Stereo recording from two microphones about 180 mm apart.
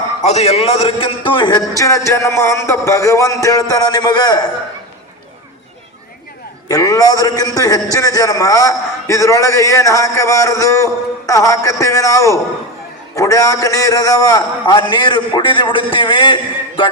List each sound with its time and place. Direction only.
0.2 s a man's voice: 35° left (ahead or behind); by 4.4 s 20° left (ahead or behind)
6.7 s a man's voice: 20° left (ahead or behind)